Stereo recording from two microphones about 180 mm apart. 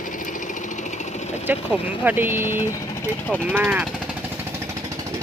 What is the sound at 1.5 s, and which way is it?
Speech, 10° right (ahead or behind).